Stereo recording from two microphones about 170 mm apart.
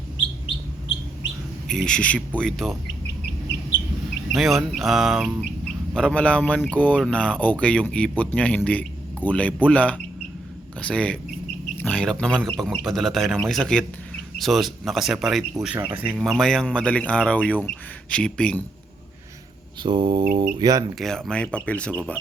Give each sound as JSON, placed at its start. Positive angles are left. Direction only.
{"t": 1.6, "sound": "speech", "side_deg": 5}
{"t": 4.4, "sound": "speech", "side_deg": 0}
{"t": 19.8, "sound": "speech", "side_deg": -30}
{"t": 21.0, "sound": "speech", "side_deg": 5}